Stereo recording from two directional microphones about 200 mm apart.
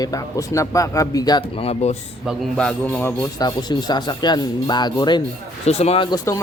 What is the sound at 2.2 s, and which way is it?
A man's voice, centre (ahead or behind).